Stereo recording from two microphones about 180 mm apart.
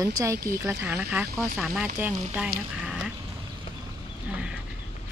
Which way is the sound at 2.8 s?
5° right (ahead or behind).